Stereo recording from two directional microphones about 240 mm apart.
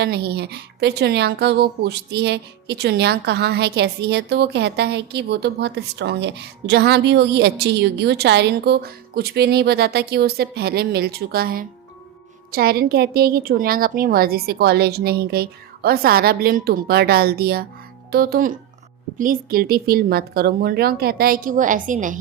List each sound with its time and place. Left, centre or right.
0.0 s a woman's voice: right